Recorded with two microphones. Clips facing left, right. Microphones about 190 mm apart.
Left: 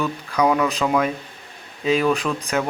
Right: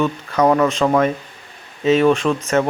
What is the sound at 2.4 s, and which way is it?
Speech, centre (ahead or behind).